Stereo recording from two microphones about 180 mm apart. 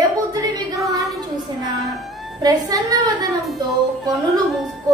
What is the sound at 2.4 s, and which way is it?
Speech, 20° right (ahead or behind).